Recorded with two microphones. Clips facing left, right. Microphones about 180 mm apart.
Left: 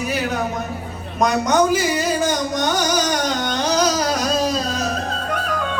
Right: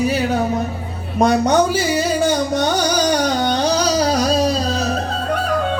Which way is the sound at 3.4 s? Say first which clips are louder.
Right 2 dB; 35° right (ahead or behind).